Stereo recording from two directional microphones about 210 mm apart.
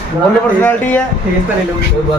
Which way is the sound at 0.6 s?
10° left (ahead or behind).